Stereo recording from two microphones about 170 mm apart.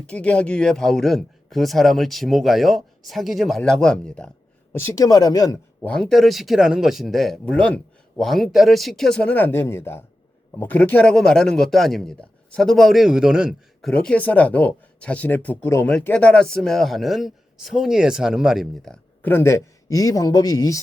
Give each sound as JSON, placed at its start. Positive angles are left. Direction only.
{"t": 0.1, "sound": "a man's voice", "side_deg": 5}
{"t": 5.8, "sound": "a man's voice", "side_deg": 5}